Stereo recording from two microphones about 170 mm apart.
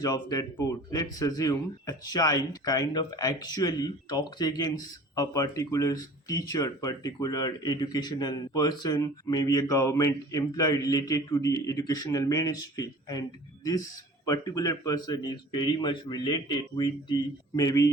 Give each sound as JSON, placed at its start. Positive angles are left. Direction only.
{"t": 0.0, "sound": "speech", "side_deg": 20}
{"t": 14.3, "sound": "speech", "side_deg": 20}